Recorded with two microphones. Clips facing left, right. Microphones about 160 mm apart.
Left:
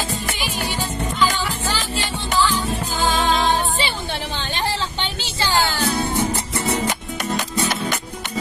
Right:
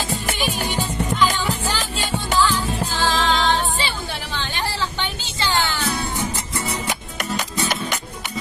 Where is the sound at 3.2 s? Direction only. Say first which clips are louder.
Left 1 dB; 20° left (ahead or behind).